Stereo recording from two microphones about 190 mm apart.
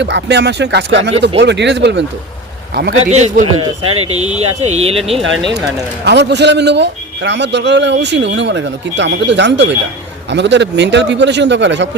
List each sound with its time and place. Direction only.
0.0 s speech: 65° right (ahead or behind)
3.0 s speech: 35° right (ahead or behind)
6.1 s a man's voice: 60° right (ahead or behind)